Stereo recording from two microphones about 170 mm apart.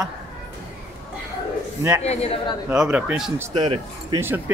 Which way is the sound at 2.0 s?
35° left (ahead or behind).